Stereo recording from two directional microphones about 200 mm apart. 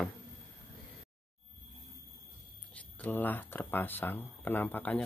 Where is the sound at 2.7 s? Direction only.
5° left (ahead or behind).